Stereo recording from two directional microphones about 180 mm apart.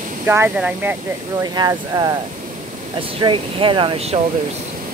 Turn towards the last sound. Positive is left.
turn(degrees=-30)  # may be behind; listen again after turning